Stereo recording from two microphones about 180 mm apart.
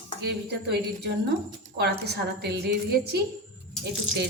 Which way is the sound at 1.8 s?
65° right (ahead or behind).